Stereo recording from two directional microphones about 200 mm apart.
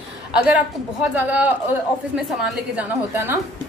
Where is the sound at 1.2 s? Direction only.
10° right (ahead or behind).